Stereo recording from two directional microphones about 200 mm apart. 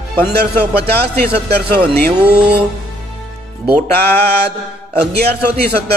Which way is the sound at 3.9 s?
55° right (ahead or behind).